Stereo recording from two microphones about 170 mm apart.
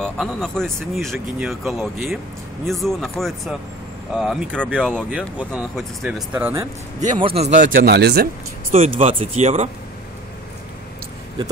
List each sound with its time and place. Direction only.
0.0 s speech: 5° left (ahead or behind); by 6.7 s 15° right (ahead or behind)
7.1 s speech: 30° right (ahead or behind)
7.6 s speech: 70° right (ahead or behind)
8.7 s speech: 35° right (ahead or behind)